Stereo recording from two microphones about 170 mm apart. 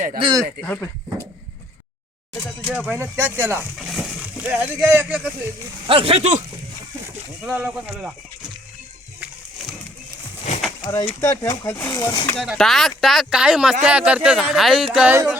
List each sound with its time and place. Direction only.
0.2 s speech: 25° right (ahead or behind)
0.6 s speech: 15° left (ahead or behind)
2.3 s speech: 15° left (ahead or behind)
2.7 s speech: 10° right (ahead or behind)
3.8 s speech: centre (ahead or behind)
5.9 s speech: 35° right (ahead or behind)
7.4 s speech: 10° right (ahead or behind)
10.8 s speech: 20° left (ahead or behind)
12.5 s speech: centre (ahead or behind)